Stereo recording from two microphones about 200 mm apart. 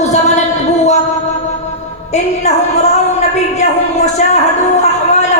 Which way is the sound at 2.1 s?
35° left (ahead or behind).